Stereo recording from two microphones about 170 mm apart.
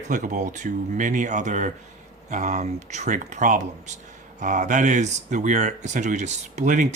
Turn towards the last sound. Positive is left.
turn(degrees=-45)  # may be behind; listen again after turning